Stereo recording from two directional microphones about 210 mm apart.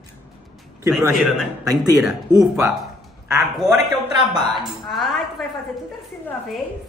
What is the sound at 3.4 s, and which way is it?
Speech, centre (ahead or behind).